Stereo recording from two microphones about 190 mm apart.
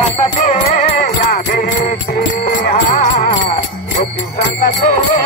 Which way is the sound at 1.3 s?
50° left (ahead or behind).